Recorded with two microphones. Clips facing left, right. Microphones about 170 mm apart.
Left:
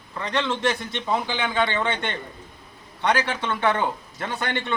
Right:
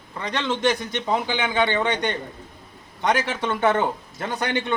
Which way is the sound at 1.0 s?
15° right (ahead or behind).